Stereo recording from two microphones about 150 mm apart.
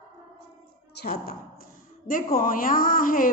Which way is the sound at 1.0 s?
90° left.